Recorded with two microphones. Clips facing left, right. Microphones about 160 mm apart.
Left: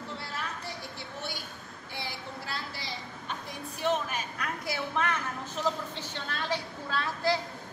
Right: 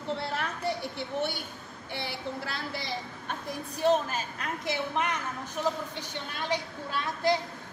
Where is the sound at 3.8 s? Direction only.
30° right (ahead or behind).